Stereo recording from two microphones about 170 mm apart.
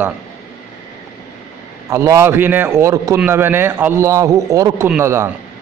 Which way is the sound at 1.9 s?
15° right (ahead or behind).